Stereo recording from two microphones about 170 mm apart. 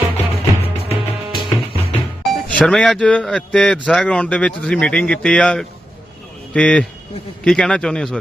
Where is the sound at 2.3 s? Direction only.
Centre (ahead or behind).